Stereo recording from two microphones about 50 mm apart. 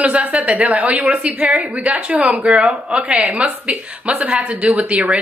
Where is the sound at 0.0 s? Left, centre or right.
Right.